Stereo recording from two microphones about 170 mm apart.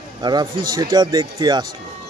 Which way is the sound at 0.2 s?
25° right (ahead or behind).